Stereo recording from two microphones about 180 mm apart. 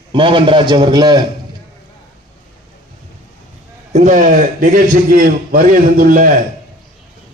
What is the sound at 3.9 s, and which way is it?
A man's voice, 45° right (ahead or behind).